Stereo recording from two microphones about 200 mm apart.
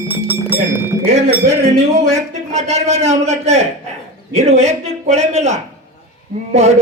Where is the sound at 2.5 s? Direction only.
35° right (ahead or behind).